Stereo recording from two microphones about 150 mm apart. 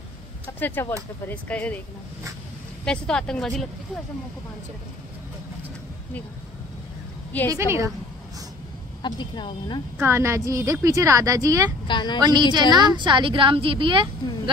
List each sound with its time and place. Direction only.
0.6 s speech: 15° left (ahead or behind)
2.8 s speech: 5° left (ahead or behind)
7.5 s a woman's voice: 20° right (ahead or behind)
9.0 s speech: 30° left (ahead or behind)
9.9 s a woman's voice: 15° right (ahead or behind)
11.9 s speech: 30° left (ahead or behind)
12.2 s a woman's voice: 30° right (ahead or behind)